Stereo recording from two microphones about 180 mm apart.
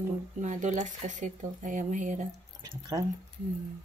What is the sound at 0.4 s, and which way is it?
Speech, 45° right (ahead or behind).